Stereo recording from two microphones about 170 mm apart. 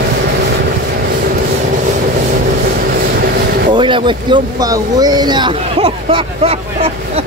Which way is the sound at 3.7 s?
30° right (ahead or behind).